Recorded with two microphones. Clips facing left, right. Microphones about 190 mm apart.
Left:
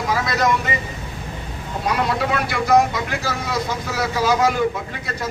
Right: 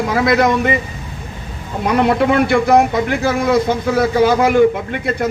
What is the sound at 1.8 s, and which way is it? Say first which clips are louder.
A man's voice: right 8 dB; 60° right (ahead or behind).